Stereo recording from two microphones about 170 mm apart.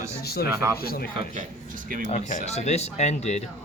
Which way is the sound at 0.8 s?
65° left (ahead or behind).